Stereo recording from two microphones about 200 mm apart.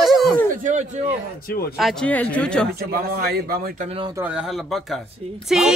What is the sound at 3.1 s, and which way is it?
Speech, 50° right (ahead or behind).